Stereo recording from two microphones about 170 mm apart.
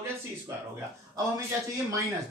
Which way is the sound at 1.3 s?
20° right (ahead or behind).